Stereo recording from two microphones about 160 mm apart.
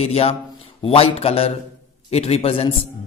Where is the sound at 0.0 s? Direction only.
40° left (ahead or behind).